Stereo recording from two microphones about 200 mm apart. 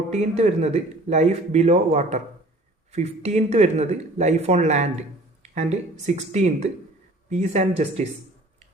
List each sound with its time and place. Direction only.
0.1 s speech: 35° right (ahead or behind)